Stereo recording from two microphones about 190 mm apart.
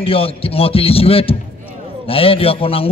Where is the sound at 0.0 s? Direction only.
30° left (ahead or behind).